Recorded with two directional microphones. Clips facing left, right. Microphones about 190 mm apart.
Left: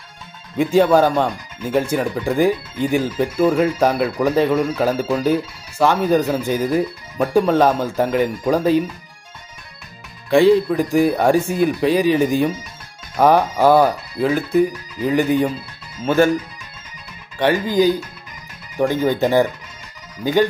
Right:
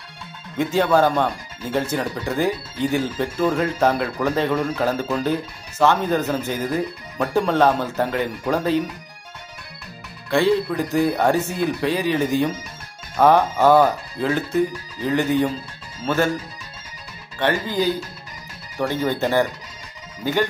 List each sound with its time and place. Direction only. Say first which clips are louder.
0.6 s speech: left 4 dB; 15° left (ahead or behind)
10.3 s speech: left 6 dB; 15° left (ahead or behind)
17.4 s speech: left 5 dB; 15° left (ahead or behind)